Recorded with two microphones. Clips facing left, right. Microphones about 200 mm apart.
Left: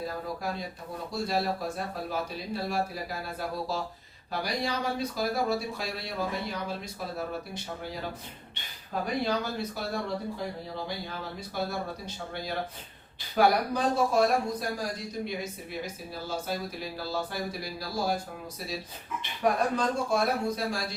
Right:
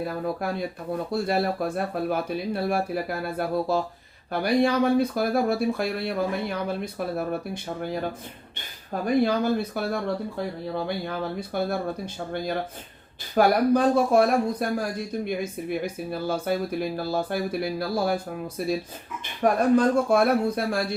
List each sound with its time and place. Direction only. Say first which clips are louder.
0.0 s speech: right 6 dB; 60° right (ahead or behind)
16.2 s speech: right 7 dB; 60° right (ahead or behind)
19.2 s speech: right 5 dB; 50° right (ahead or behind)